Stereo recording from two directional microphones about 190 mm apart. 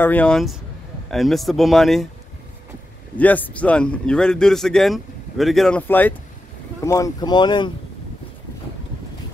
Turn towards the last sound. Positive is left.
turn(degrees=25)  # may be behind; listen again after turning